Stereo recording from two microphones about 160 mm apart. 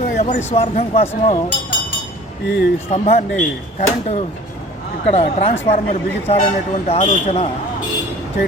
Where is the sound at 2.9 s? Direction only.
40° left (ahead or behind).